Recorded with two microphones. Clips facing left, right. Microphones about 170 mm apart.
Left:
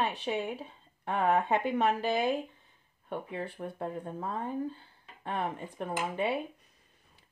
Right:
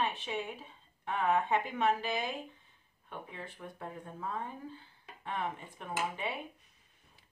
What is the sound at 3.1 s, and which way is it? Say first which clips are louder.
Speech: left 8 dB; 40° left (ahead or behind).